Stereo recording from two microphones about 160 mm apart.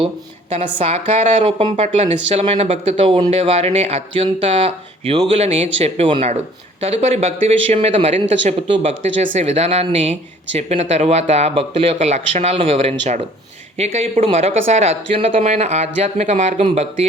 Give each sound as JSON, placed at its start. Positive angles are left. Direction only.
{"t": 0.5, "sound": "a woman's voice", "side_deg": -40}